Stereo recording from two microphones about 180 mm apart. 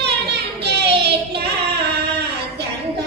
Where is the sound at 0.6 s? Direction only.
65° right (ahead or behind).